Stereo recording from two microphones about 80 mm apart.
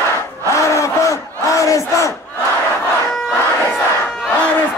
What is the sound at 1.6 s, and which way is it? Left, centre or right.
Battle cry, left.